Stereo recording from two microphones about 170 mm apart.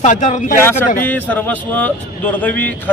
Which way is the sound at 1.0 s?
10° left (ahead or behind).